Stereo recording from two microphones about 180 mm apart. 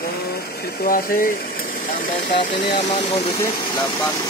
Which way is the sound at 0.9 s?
50° left (ahead or behind).